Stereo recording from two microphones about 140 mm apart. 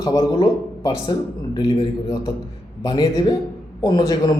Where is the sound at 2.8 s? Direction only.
30° left (ahead or behind).